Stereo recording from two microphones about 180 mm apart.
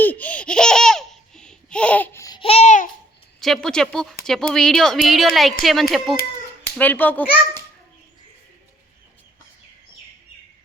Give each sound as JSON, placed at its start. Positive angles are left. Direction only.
{"t": 0.0, "sound": "laughter", "side_deg": 10}
{"t": 2.2, "sound": "babbling", "side_deg": 25}
{"t": 3.4, "sound": "a woman's voice", "side_deg": 5}